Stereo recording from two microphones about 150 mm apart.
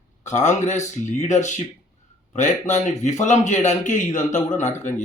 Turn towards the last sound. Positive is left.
turn(degrees=50)  # may be behind; listen again after turning